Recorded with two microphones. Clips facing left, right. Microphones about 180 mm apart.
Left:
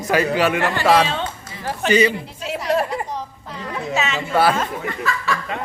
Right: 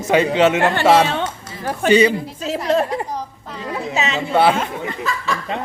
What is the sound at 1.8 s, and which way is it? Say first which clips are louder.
Speech: right 3 dB; 30° right (ahead or behind).